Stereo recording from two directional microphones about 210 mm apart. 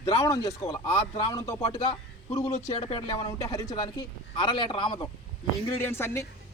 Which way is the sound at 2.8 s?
25° left (ahead or behind).